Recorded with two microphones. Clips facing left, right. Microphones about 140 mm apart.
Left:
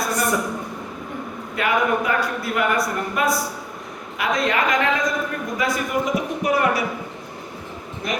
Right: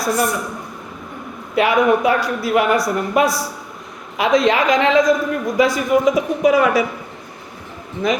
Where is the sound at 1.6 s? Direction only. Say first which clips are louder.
Right 6 dB; 90° right.